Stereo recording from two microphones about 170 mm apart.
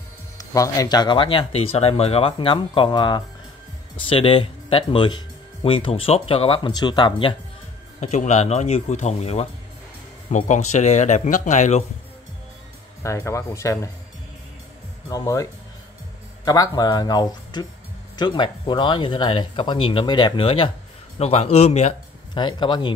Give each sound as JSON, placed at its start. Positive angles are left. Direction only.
{"t": 0.4, "sound": "speech", "side_deg": 20}
{"t": 8.0, "sound": "speech", "side_deg": 45}
{"t": 13.0, "sound": "speech", "side_deg": 15}
{"t": 15.0, "sound": "speech", "side_deg": 20}
{"t": 16.4, "sound": "speech", "side_deg": 20}
{"t": 22.3, "sound": "speech", "side_deg": 25}